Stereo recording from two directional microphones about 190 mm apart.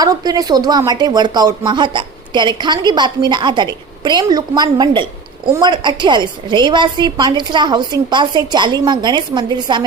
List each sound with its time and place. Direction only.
0.0 s speech: 20° right (ahead or behind)